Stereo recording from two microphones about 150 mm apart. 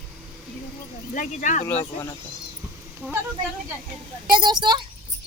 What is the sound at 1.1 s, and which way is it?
Speech, 60° left (ahead or behind).